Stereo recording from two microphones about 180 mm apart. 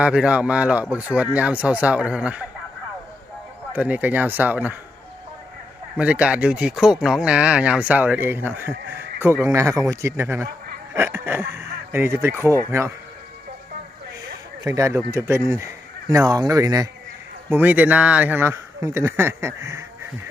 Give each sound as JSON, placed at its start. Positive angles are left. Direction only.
{"t": 0.0, "sound": "speech", "side_deg": -5}
{"t": 3.7, "sound": "speech", "side_deg": -10}
{"t": 6.0, "sound": "speech", "side_deg": -5}
{"t": 14.6, "sound": "speech", "side_deg": -15}
{"t": 17.5, "sound": "speech", "side_deg": -10}